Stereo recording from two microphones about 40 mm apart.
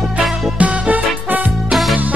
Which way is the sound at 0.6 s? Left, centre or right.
Right.